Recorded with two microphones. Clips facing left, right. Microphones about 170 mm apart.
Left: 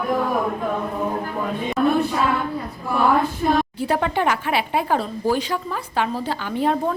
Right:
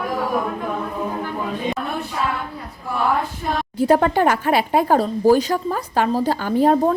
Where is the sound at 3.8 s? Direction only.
40° right (ahead or behind).